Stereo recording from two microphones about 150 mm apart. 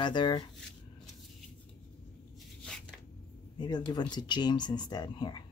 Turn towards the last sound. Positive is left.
turn(degrees=30)  # may be behind; listen again after turning